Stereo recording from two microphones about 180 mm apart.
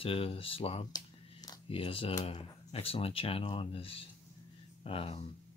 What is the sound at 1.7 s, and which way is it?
Speech, 30° left (ahead or behind).